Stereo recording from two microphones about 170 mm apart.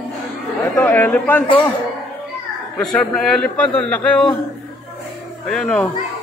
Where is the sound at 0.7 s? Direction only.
10° left (ahead or behind).